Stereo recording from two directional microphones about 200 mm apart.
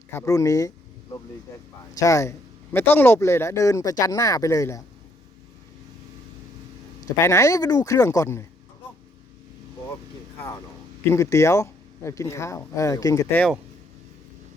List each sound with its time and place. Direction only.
0.1 s speech: 15° left (ahead or behind)
2.0 s speech: 15° left (ahead or behind)
7.2 s speech: 15° left (ahead or behind)
11.1 s speech: 15° left (ahead or behind)